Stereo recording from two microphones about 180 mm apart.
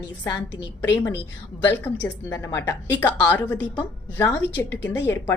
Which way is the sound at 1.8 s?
15° left (ahead or behind).